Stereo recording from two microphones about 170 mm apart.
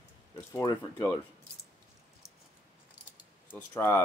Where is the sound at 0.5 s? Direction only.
20° left (ahead or behind).